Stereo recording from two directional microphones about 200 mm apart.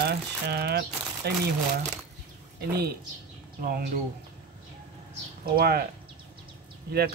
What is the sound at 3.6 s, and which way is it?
Speech, 45° right (ahead or behind).